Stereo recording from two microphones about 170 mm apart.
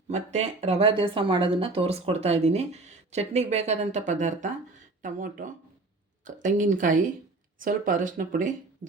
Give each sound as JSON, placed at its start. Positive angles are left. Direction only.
{"t": 0.1, "sound": "speech", "side_deg": -40}